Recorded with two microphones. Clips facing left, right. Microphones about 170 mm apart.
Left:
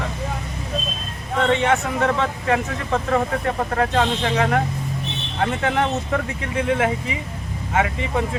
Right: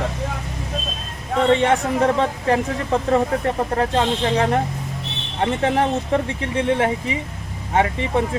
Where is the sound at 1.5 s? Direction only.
35° right (ahead or behind).